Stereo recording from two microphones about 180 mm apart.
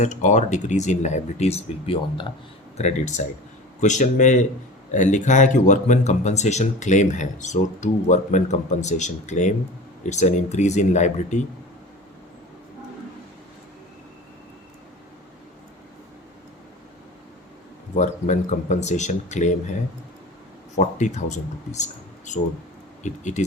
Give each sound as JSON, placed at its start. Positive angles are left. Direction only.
{"t": 0.0, "sound": "speech", "side_deg": 40}
{"t": 17.9, "sound": "speech", "side_deg": 40}
{"t": 20.7, "sound": "speech", "side_deg": 40}
{"t": 23.0, "sound": "speech", "side_deg": 40}